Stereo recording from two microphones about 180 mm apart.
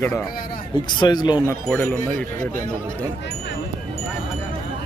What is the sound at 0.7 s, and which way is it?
Speech, 25° left (ahead or behind).